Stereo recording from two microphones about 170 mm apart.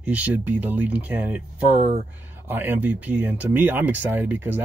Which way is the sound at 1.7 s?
40° right (ahead or behind).